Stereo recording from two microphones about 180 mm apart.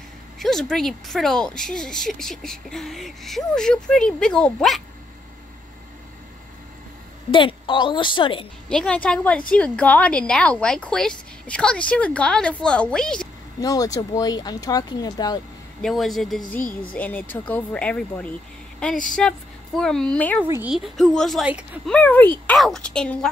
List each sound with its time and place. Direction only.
0.4 s speech: centre (ahead or behind)
7.2 s speech: 30° left (ahead or behind)
8.6 s speech: 5° left (ahead or behind)
13.6 s speech: 20° left (ahead or behind)
15.8 s speech: centre (ahead or behind)
20.4 s a woman's voice: 15° right (ahead or behind)
20.7 s speech: centre (ahead or behind)
21.9 s speech: 10° left (ahead or behind)